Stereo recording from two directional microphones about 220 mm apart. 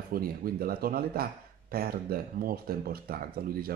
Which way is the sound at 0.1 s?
40° right (ahead or behind).